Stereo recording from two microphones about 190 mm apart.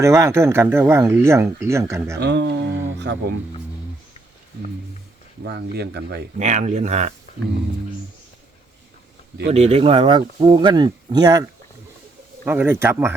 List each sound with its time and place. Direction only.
0.0 s speech: 15° right (ahead or behind)
2.2 s speech: 65° right (ahead or behind)
5.4 s speech: 60° right (ahead or behind)
6.3 s speech: 40° right (ahead or behind)
9.5 s speech: 35° right (ahead or behind)
12.5 s speech: 10° right (ahead or behind)